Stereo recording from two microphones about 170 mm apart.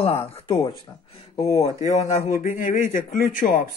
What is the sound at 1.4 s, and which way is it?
Speech, 20° left (ahead or behind).